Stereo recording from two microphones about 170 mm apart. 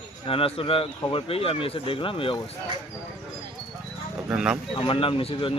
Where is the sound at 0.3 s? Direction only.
35° left (ahead or behind).